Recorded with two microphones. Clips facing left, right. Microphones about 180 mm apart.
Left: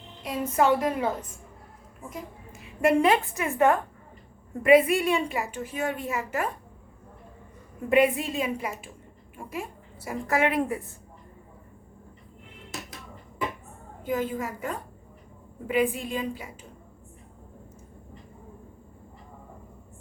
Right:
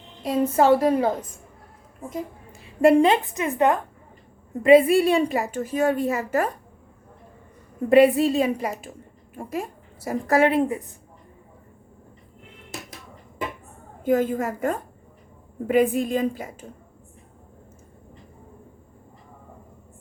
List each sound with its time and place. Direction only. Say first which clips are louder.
0.3 s a woman's voice: right 5 dB; 35° right (ahead or behind); by 3.8 s 20° right (ahead or behind)
4.6 s a woman's voice: right 4 dB; 30° right (ahead or behind)
7.9 s a woman's voice: right 7 dB; 35° right (ahead or behind)
10.6 s a woman's voice: right 4 dB; 20° right (ahead or behind)
14.0 s a woman's voice: right 7 dB; 50° right (ahead or behind)